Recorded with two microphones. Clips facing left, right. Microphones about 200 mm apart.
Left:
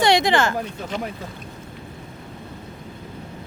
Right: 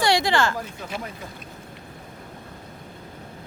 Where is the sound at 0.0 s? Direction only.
20° left (ahead or behind).